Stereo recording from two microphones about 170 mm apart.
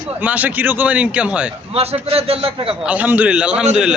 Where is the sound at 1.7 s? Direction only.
35° right (ahead or behind).